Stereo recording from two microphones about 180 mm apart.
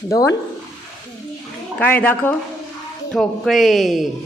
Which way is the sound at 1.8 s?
10° left (ahead or behind).